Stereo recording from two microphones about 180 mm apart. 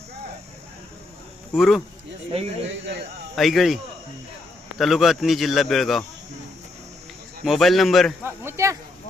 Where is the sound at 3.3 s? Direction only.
Centre (ahead or behind).